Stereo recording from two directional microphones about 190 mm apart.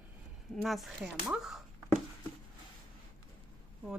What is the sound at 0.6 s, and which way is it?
Speech, centre (ahead or behind).